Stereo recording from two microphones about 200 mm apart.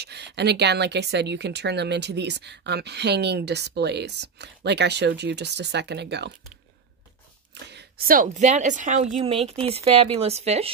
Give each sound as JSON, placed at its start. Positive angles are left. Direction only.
{"t": 0.0, "sound": "speech", "side_deg": -55}
{"t": 7.6, "sound": "a sound", "side_deg": -55}
{"t": 8.2, "sound": "a woman's voice", "side_deg": -35}